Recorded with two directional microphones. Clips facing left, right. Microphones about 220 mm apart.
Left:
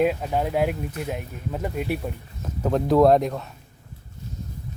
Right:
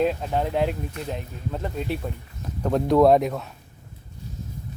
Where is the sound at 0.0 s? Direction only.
5° left (ahead or behind).